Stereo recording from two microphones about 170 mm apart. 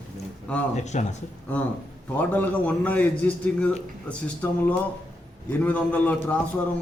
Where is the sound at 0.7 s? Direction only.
45° left (ahead or behind).